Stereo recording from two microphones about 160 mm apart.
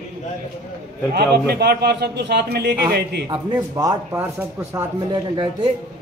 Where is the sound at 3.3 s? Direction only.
25° right (ahead or behind).